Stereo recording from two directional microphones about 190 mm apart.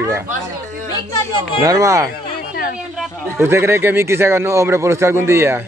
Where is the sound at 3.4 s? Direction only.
15° right (ahead or behind).